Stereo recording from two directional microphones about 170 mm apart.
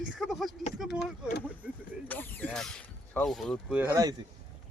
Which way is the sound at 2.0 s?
10° left (ahead or behind).